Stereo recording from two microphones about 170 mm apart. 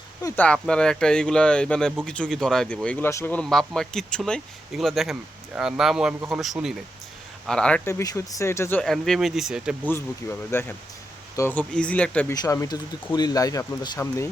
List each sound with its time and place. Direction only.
0.3 s speech: 5° left (ahead or behind)
7.9 s speech: 15° left (ahead or behind)
8.8 s speech: centre (ahead or behind)
9.9 s speech: 15° left (ahead or behind)
12.3 s speech: 20° left (ahead or behind)